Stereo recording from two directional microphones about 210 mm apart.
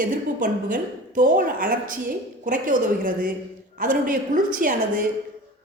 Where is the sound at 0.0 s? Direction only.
40° right (ahead or behind).